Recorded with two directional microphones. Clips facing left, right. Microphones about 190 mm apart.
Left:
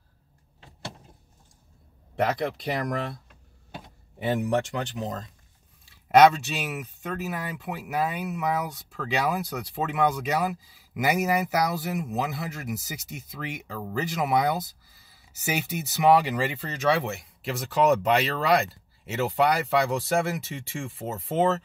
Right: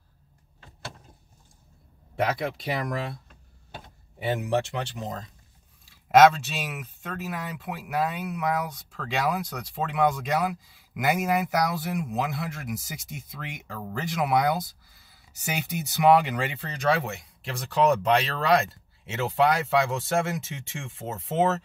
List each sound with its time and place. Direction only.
2.1 s speech: centre (ahead or behind)
4.6 s speech: centre (ahead or behind)